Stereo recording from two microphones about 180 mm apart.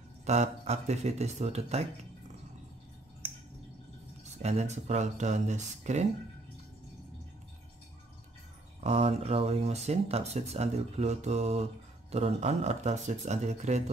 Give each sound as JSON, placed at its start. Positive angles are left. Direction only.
{"t": 0.2, "sound": "speech", "side_deg": -40}
{"t": 4.2, "sound": "speech", "side_deg": -40}
{"t": 8.8, "sound": "speech", "side_deg": -35}